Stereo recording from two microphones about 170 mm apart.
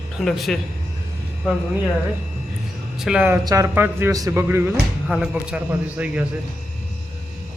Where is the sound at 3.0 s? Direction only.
5° right (ahead or behind).